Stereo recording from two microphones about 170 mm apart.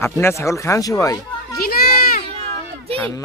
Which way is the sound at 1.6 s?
65° left (ahead or behind).